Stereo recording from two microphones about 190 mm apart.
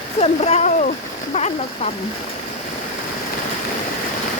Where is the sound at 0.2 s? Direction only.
35° left (ahead or behind).